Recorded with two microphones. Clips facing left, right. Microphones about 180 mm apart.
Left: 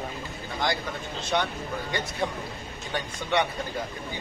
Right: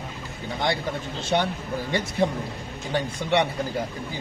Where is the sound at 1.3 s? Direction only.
30° right (ahead or behind).